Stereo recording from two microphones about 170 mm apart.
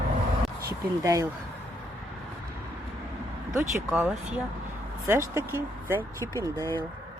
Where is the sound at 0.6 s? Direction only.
20° right (ahead or behind).